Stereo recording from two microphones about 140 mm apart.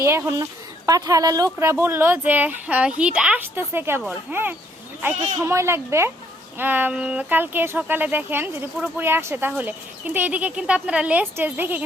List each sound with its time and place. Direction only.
0.0 s a woman's voice: 20° right (ahead or behind)